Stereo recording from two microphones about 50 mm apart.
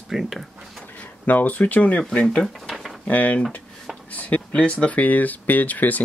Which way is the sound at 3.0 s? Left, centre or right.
Left.